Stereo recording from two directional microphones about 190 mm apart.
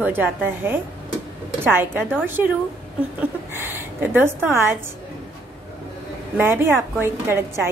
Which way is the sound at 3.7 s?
10° right (ahead or behind).